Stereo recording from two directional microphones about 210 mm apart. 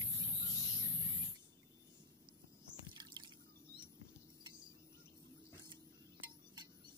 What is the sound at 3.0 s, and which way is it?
Drip, 20° right (ahead or behind).